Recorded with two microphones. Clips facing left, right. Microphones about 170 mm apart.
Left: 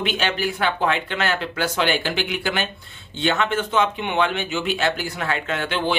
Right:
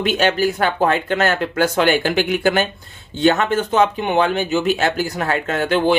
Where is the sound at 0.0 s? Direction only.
45° right (ahead or behind).